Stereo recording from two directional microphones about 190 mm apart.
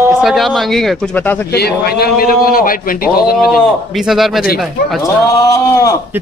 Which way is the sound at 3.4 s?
Centre (ahead or behind).